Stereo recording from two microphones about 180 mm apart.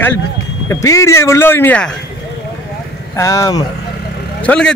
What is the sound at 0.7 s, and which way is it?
Speech, 15° left (ahead or behind).